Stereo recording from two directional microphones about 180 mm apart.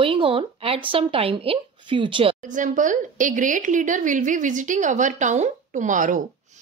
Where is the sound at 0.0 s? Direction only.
30° right (ahead or behind).